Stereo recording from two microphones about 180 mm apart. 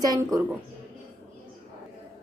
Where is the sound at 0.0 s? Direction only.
20° right (ahead or behind).